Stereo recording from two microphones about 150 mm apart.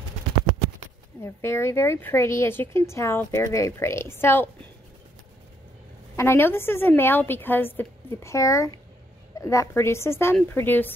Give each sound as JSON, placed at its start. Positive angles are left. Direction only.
{"t": 1.2, "sound": "speech", "side_deg": 15}
{"t": 6.1, "sound": "speech", "side_deg": 15}